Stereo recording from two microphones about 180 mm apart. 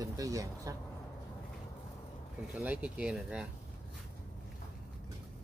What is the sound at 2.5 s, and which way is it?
Speech, 10° right (ahead or behind).